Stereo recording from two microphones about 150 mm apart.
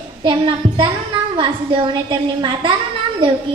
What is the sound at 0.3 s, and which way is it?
A woman's voice, 35° right (ahead or behind).